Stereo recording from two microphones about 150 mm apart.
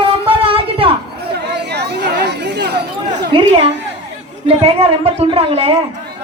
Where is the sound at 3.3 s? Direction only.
35° right (ahead or behind).